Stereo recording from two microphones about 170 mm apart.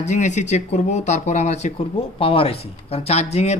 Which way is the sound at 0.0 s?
45° left (ahead or behind).